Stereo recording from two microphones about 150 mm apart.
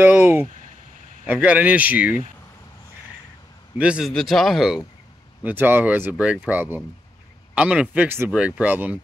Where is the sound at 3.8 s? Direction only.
5° right (ahead or behind).